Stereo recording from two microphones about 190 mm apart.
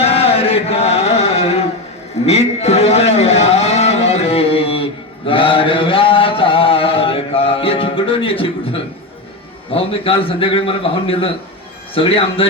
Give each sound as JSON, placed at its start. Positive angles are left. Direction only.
{"t": 0.0, "sound": "chant", "side_deg": 30}
{"t": 2.2, "sound": "vehicle", "side_deg": 35}
{"t": 9.7, "sound": "a man's voice", "side_deg": 30}